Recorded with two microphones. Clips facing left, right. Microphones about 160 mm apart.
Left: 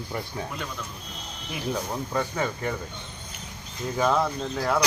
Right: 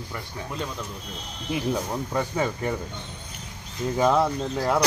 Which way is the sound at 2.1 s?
15° right (ahead or behind).